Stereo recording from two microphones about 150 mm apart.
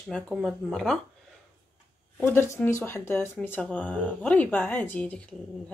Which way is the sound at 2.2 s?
15° left (ahead or behind).